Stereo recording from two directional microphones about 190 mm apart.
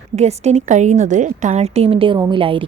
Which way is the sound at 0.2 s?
35° right (ahead or behind).